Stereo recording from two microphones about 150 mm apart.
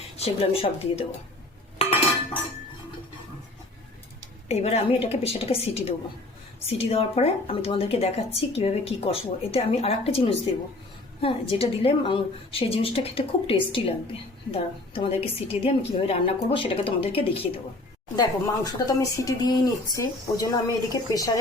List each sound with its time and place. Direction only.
0.2 s speech: 40° left (ahead or behind)
4.4 s speech: 45° left (ahead or behind)
18.2 s speech: 25° left (ahead or behind)